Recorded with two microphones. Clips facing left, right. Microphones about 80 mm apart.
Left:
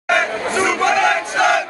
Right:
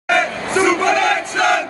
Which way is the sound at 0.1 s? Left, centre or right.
Centre.